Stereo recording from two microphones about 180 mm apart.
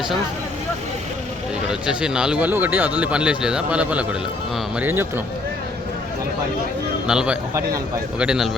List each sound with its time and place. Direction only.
1.9 s speech: 5° right (ahead or behind)
7.1 s a man's voice: 5° right (ahead or behind)